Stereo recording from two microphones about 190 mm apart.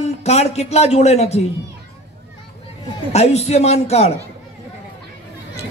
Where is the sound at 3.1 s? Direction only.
35° left (ahead or behind).